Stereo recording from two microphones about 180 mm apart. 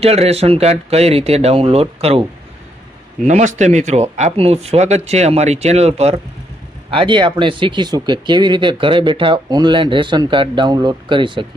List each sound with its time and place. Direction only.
0.0 s speech: 35° right (ahead or behind)
3.3 s speech: 40° right (ahead or behind)